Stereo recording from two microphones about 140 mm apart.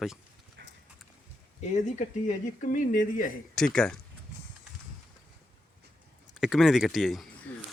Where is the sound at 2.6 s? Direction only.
70° left (ahead or behind).